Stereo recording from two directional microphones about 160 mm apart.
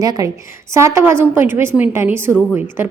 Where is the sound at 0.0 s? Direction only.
20° right (ahead or behind).